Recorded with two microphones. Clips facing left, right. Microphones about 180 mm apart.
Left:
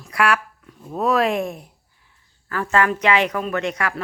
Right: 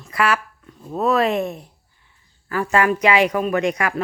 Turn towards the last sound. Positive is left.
turn(degrees=-15)  # may be behind; listen again after turning